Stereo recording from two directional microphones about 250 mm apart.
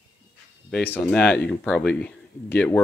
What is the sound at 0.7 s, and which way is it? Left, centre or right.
Speech, centre.